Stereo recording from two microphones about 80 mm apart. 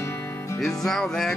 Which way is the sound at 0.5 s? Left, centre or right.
Centre.